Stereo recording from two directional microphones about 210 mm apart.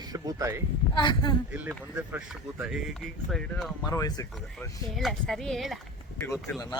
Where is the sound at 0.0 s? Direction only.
20° right (ahead or behind).